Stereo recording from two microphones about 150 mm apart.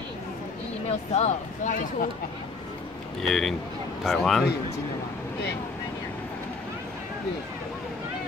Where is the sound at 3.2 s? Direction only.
Centre (ahead or behind).